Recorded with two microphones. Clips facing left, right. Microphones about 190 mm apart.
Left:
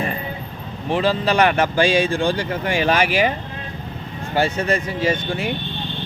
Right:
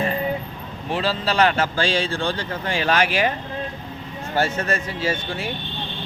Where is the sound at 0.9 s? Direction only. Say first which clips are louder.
Left 5 dB; 15° left (ahead or behind).